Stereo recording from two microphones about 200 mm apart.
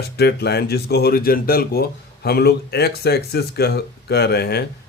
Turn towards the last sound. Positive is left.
turn(degrees=55)  # may be behind; listen again after turning